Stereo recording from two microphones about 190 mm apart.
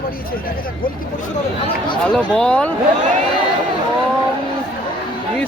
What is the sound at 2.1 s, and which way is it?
Speech, 5° left (ahead or behind).